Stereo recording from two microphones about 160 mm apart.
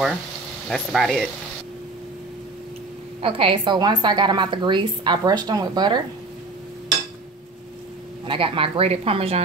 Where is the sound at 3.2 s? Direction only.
35° right (ahead or behind).